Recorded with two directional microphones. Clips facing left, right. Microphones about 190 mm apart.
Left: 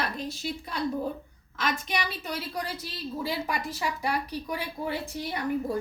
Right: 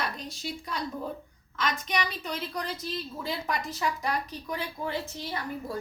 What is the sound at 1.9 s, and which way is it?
A woman's voice, 5° left (ahead or behind).